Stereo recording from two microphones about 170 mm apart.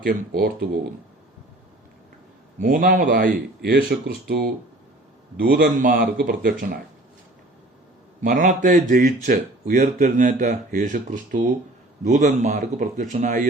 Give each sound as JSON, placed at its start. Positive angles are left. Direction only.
{"t": 0.0, "sound": "speech", "side_deg": -60}
{"t": 2.6, "sound": "speech", "side_deg": -50}
{"t": 8.2, "sound": "speech", "side_deg": -50}